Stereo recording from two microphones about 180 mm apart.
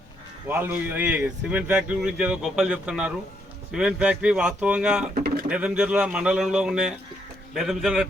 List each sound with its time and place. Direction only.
0.4 s a man's voice: 10° right (ahead or behind)
5.1 s pigeon: 60° right (ahead or behind)
5.5 s speech: 5° right (ahead or behind)